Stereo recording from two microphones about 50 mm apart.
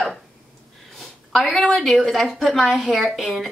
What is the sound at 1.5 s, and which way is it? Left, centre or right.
Speech, centre.